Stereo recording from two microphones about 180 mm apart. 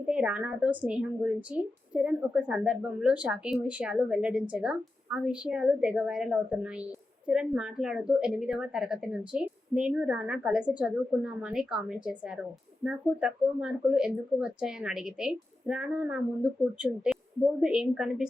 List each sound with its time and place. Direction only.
0.1 s a woman's voice: 5° right (ahead or behind)